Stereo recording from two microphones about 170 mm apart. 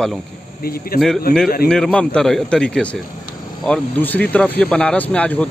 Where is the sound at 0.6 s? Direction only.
60° left (ahead or behind).